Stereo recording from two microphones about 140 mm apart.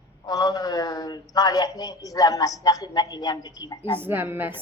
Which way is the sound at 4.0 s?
15° right (ahead or behind).